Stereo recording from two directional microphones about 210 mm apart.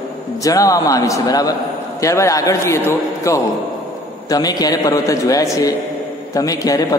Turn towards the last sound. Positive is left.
turn(degrees=15)  # may be behind; listen again after turning